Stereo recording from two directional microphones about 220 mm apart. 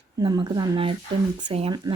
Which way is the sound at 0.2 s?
20° right (ahead or behind).